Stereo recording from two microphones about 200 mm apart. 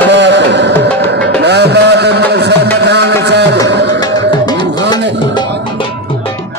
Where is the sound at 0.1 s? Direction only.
60° right (ahead or behind).